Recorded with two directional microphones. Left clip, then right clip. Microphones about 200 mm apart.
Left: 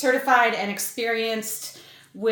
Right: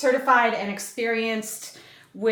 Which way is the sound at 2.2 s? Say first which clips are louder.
Even; centre (ahead or behind).